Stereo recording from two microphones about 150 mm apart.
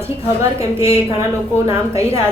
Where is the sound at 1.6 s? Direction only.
20° right (ahead or behind).